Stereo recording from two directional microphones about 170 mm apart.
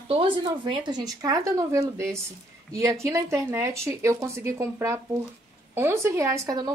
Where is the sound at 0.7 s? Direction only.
25° right (ahead or behind).